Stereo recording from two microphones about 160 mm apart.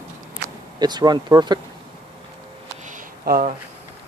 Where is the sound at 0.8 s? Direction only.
25° right (ahead or behind).